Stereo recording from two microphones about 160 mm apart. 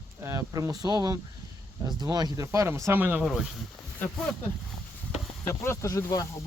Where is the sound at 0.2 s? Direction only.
20° right (ahead or behind); by 3.5 s 5° right (ahead or behind).